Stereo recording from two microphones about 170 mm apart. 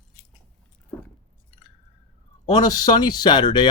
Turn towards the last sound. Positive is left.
turn(degrees=25)  # may be behind; listen again after turning